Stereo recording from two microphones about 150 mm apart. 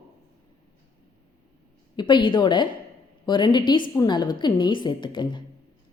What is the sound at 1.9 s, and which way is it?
A woman's voice, 30° left (ahead or behind).